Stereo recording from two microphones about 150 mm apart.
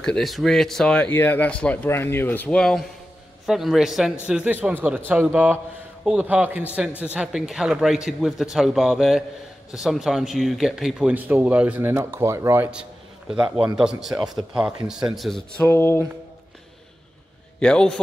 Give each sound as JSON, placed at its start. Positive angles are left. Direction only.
{"t": 0.0, "sound": "speech", "side_deg": 5}
{"t": 15.7, "sound": "speech", "side_deg": 15}
{"t": 17.6, "sound": "speech", "side_deg": 5}